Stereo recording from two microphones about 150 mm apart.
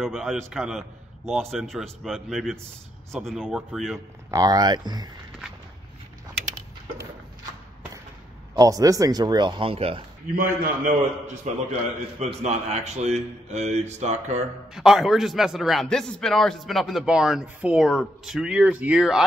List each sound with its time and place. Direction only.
0.0 s a man's voice: centre (ahead or behind)
4.3 s a man's voice: 25° right (ahead or behind)
8.5 s a man's voice: 25° right (ahead or behind); by 10.0 s 40° right (ahead or behind)
10.3 s a man's voice: 75° right (ahead or behind)
12.2 s a man's voice: 45° right (ahead or behind)
14.7 s a man's voice: 5° right (ahead or behind)